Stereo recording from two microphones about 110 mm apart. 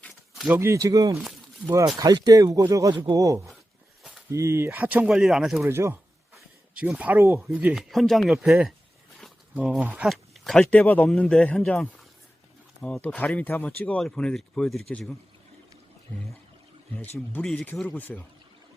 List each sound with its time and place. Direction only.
0.3 s a sound: 5° right (ahead or behind)
0.6 s speech: 30° right (ahead or behind); by 5.1 s 15° right (ahead or behind)
5.1 s speech: centre (ahead or behind)
5.6 s speech: 25° right (ahead or behind)
7.7 s speech: centre (ahead or behind)
9.6 s speech: 10° right (ahead or behind)
10.1 s speech: 5° left (ahead or behind)
17.2 s speech: 10° left (ahead or behind)